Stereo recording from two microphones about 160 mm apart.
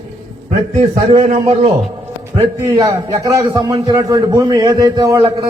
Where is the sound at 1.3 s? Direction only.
45° right (ahead or behind).